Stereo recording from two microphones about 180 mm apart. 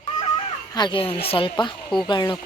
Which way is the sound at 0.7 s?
25° left (ahead or behind).